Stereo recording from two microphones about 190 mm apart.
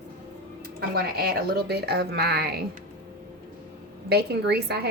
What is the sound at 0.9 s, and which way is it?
A woman's voice, 55° right (ahead or behind).